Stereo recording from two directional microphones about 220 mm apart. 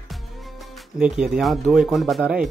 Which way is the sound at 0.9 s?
5° right (ahead or behind).